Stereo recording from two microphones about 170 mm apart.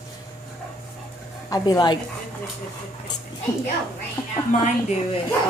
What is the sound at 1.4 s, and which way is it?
Speech, 20° left (ahead or behind).